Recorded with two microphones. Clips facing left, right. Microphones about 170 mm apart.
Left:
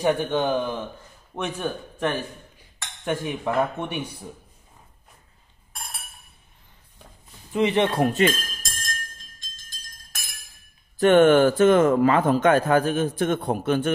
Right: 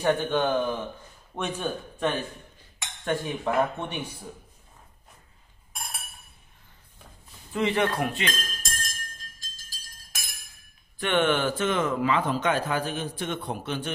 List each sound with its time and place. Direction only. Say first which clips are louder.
0.0 s a man's voice: left 2 dB; 15° left (ahead or behind)
3.0 s cutlery: left 2 dB; 15° left (ahead or behind)
3.4 s a man's voice: left 1 dB; 10° left (ahead or behind)
7.5 s speech: left 4 dB; 20° left (ahead or behind)
8.3 s glass: left 5 dB; centre (ahead or behind)
9.4 s a sound: even; 5° right (ahead or behind)
11.0 s a man's voice: left 9 dB; 45° left (ahead or behind)